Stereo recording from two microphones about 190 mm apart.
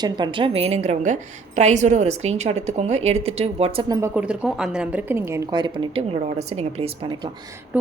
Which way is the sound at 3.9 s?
10° right (ahead or behind).